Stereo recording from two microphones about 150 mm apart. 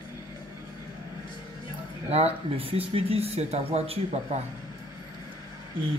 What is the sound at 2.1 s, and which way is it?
Speech, 45° right (ahead or behind).